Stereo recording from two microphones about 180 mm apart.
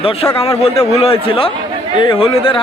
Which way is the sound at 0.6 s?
35° left (ahead or behind).